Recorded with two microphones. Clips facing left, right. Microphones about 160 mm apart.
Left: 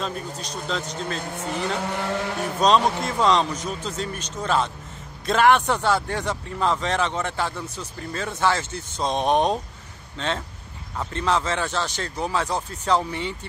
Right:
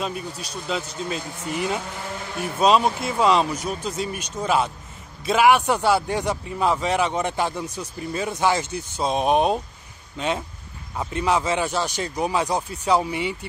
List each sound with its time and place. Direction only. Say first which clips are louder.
0.0 s speech: right 1 dB; 10° right (ahead or behind)
1.9 s speech: left 6 dB; 75° left (ahead or behind)
2.6 s speech: right 1 dB; 5° right (ahead or behind)